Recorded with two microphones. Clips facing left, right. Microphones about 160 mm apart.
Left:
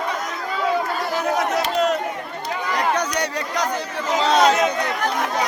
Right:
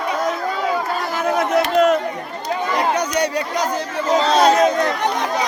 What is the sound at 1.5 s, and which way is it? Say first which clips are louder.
Speech: right 5 dB; 55° right (ahead or behind).